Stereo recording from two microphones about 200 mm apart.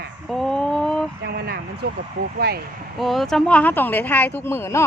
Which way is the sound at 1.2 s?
55° right (ahead or behind).